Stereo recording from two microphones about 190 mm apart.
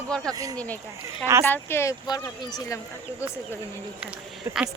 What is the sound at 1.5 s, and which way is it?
Speech, 10° left (ahead or behind).